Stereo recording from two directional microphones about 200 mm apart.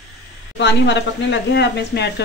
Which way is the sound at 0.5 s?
60° left (ahead or behind).